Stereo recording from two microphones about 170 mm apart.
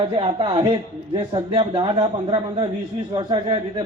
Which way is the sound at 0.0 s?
30° right (ahead or behind).